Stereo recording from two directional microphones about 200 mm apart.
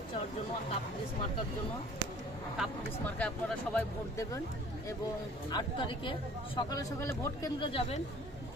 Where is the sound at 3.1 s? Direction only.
5° left (ahead or behind).